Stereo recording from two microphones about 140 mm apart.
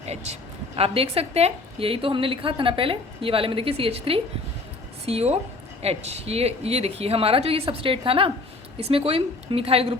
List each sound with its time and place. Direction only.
0.0 s a man's voice: 50° right (ahead or behind)